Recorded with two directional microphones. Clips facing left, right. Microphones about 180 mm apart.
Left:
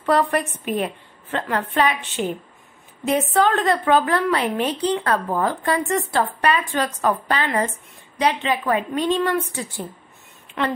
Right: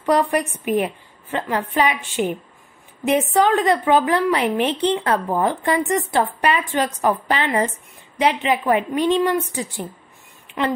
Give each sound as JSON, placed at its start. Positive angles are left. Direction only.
{"t": 0.0, "sound": "a woman's voice", "side_deg": -15}
{"t": 3.0, "sound": "a woman's voice", "side_deg": -15}